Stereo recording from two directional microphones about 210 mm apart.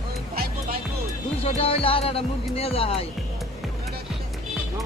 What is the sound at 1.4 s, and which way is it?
Speech, 30° left (ahead or behind).